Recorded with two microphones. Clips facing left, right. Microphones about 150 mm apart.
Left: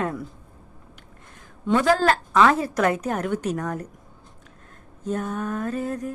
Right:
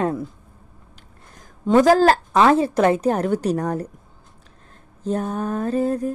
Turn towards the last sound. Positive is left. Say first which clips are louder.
# right 6 dB
turn(degrees=-30)  # may be behind; listen again after turning